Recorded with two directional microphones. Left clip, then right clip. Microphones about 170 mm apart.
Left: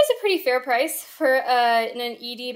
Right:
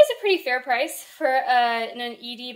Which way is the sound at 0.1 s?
45° left (ahead or behind).